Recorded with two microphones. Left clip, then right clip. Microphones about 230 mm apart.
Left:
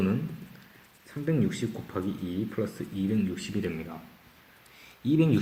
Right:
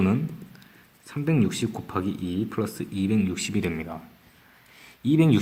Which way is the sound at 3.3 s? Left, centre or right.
Right.